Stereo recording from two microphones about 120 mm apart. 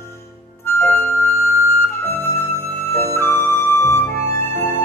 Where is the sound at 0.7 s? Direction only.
20° left (ahead or behind).